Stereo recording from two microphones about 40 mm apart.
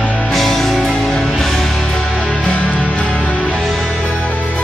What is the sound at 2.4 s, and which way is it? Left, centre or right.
Music, left.